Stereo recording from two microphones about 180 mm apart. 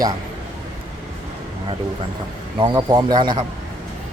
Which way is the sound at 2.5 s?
25° right (ahead or behind).